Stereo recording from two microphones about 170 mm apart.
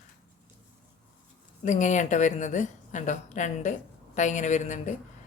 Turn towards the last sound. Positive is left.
turn(degrees=45)  # may be behind; listen again after turning